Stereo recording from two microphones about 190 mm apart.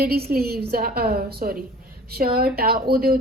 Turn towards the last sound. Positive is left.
turn(degrees=-50)  # may be behind; listen again after turning